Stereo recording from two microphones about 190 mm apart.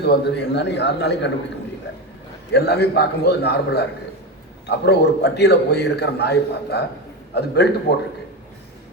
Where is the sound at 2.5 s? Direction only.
60° left (ahead or behind).